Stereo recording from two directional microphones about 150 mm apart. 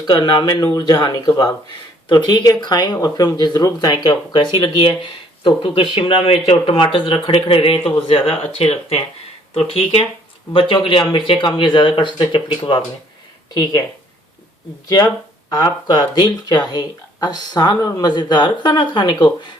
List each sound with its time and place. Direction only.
0.1 s speech: 30° left (ahead or behind)
14.8 s speech: 25° left (ahead or behind)